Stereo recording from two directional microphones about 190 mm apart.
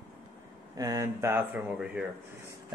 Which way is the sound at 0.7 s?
20° right (ahead or behind).